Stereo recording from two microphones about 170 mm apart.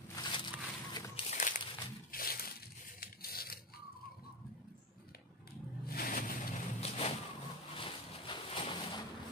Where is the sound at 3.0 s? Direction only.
60° left (ahead or behind).